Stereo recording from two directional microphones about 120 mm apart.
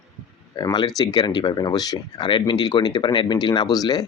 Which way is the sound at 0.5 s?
35° left (ahead or behind).